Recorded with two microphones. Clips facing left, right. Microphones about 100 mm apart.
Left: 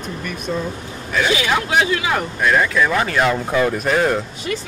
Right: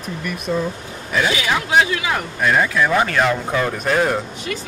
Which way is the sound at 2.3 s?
5° right (ahead or behind).